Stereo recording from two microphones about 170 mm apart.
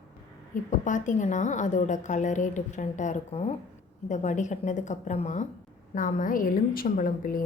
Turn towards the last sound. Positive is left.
turn(degrees=55)  # may be behind; listen again after turning